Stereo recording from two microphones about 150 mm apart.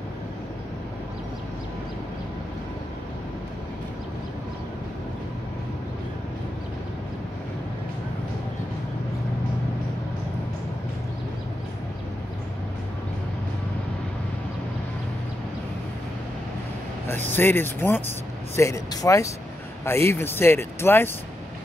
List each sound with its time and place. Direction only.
17.4 s speech: 15° left (ahead or behind)